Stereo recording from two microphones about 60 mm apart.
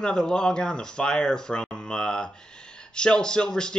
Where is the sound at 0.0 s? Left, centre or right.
Centre.